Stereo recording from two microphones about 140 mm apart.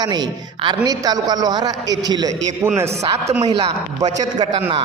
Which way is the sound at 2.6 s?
15° right (ahead or behind).